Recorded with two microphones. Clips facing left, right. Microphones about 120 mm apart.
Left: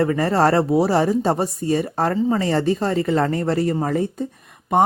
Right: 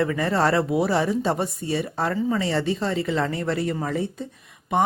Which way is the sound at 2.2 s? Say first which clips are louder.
Left 3 dB; 30° left (ahead or behind).